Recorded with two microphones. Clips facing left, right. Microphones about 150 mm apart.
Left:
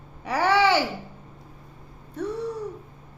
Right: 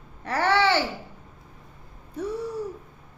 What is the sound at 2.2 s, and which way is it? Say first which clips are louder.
Babbling: left 1 dB; centre (ahead or behind).